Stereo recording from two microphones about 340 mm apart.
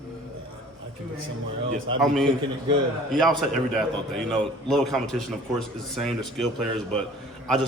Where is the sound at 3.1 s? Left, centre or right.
Centre.